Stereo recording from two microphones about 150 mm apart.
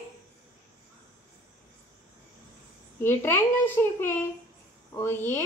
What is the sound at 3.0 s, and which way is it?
Speech, 15° left (ahead or behind).